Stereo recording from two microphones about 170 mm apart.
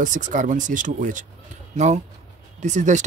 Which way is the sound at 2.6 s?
45° right (ahead or behind).